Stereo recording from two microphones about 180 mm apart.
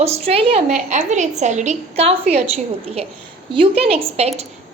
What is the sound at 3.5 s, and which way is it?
Speech, 30° right (ahead or behind).